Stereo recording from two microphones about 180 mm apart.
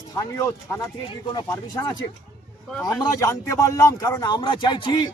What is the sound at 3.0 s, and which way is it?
A man's voice, 20° left (ahead or behind).